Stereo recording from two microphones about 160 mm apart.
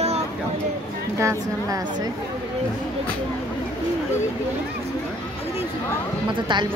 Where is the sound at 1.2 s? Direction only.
20° right (ahead or behind).